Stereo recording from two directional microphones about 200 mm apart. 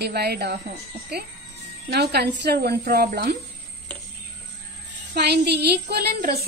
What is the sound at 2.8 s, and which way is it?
Speech, 45° right (ahead or behind).